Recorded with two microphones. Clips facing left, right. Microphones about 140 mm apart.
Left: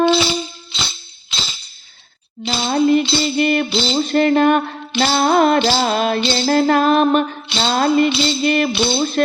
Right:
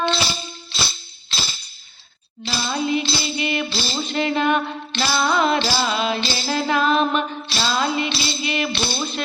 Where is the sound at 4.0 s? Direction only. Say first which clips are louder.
Left 8 dB; 45° left (ahead or behind).